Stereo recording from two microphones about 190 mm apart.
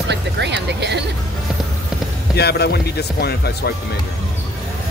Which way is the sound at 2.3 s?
60° left (ahead or behind).